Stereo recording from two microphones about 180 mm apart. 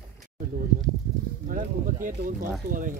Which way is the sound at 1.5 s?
50° right (ahead or behind).